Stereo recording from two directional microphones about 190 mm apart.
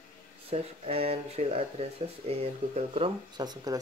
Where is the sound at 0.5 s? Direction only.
30° right (ahead or behind).